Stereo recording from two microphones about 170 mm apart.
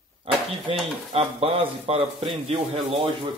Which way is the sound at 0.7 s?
35° right (ahead or behind).